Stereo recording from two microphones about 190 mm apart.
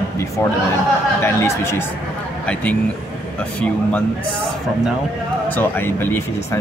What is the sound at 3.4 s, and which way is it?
Speech, 5° left (ahead or behind).